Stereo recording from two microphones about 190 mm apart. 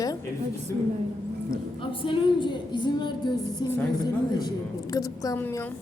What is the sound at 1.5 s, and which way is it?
A woman's voice, 25° left (ahead or behind).